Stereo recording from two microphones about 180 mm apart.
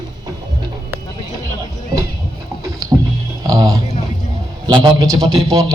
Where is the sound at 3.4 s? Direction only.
20° right (ahead or behind).